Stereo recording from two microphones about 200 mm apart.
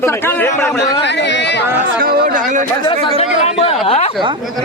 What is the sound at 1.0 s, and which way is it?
Speech, 60° left (ahead or behind).